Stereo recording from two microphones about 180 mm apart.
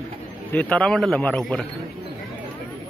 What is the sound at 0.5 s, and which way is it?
A man's voice, 5° left (ahead or behind).